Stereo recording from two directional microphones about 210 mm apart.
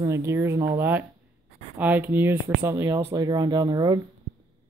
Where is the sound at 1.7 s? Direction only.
10° right (ahead or behind).